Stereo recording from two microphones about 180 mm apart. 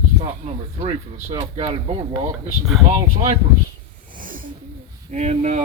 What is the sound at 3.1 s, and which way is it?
Speech, 35° right (ahead or behind).